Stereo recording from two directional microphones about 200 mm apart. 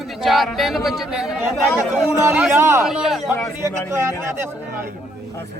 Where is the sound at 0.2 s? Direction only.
Centre (ahead or behind).